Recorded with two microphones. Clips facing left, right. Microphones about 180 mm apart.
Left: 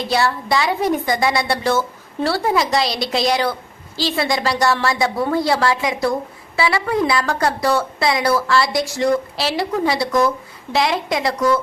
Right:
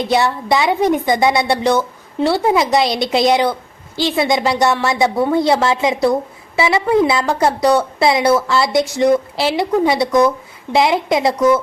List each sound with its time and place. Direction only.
0.0 s a woman's voice: 20° right (ahead or behind)